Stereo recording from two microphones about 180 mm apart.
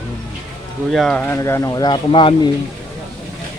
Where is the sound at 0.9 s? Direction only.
5° left (ahead or behind); by 2.4 s 30° left (ahead or behind).